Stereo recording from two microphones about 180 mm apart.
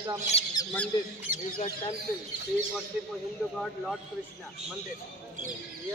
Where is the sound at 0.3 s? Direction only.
35° left (ahead or behind).